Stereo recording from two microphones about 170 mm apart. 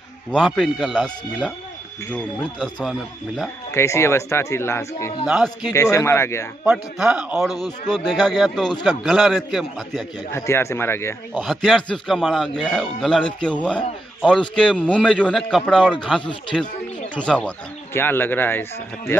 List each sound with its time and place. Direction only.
0.3 s a man's voice: centre (ahead or behind)
3.7 s speech: 15° left (ahead or behind)
5.2 s a man's voice: 5° right (ahead or behind)
5.7 s speech: 15° left (ahead or behind)
6.6 s a man's voice: 5° right (ahead or behind)
10.3 s speech: 15° left (ahead or behind)
11.3 s a man's voice: centre (ahead or behind)
16.2 s speech: 30° left (ahead or behind)
17.1 s speech: 5° left (ahead or behind)